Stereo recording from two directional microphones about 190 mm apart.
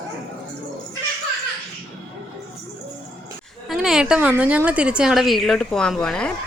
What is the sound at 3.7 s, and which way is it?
Speech, centre (ahead or behind).